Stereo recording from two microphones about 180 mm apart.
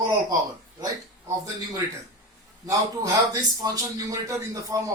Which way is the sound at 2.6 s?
20° right (ahead or behind).